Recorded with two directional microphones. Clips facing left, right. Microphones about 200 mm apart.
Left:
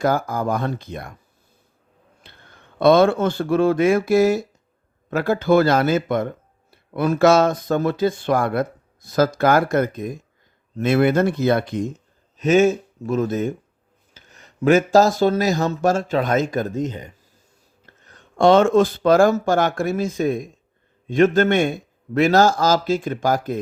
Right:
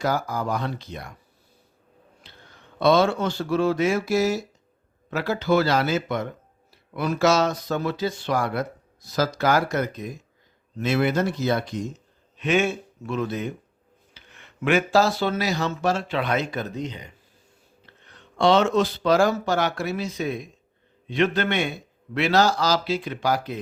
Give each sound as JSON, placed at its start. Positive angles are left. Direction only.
{"t": 0.0, "sound": "speech", "side_deg": 50}
{"t": 2.2, "sound": "speech", "side_deg": 55}